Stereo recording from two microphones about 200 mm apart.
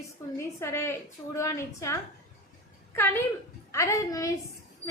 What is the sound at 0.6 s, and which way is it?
A woman's voice, 15° left (ahead or behind).